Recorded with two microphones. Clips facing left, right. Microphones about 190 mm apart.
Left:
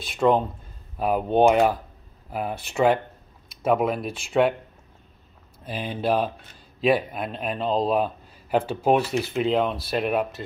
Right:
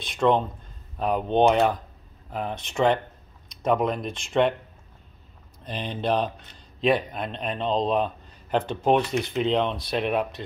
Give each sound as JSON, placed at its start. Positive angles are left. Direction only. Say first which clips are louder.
{"t": 0.0, "sound": "a man's voice", "louder": "left 1 dB", "side_deg": 5}
{"t": 5.6, "sound": "a man's voice", "louder": "left 2 dB", "side_deg": 5}